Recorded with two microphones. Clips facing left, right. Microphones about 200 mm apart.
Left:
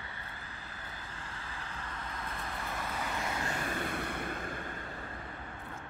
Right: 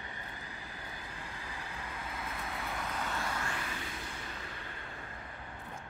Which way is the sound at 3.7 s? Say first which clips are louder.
Left 7 dB; 55° left (ahead or behind).